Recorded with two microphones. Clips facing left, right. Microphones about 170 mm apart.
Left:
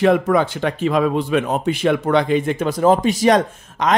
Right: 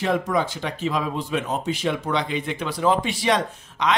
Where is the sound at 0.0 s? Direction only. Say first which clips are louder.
Left 7 dB; 60° left (ahead or behind).